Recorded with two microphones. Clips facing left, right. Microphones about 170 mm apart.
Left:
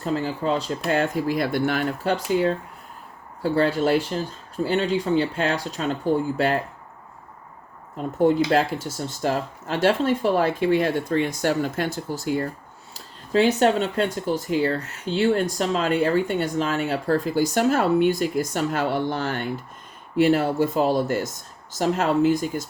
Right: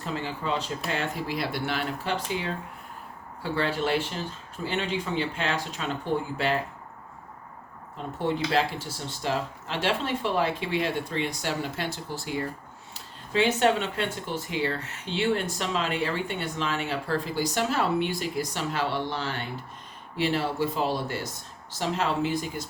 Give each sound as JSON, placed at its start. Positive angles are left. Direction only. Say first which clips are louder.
{"t": 0.0, "sound": "speech", "louder": "left 7 dB", "side_deg": 40}
{"t": 8.2, "sound": "speech", "louder": "left 7 dB", "side_deg": 45}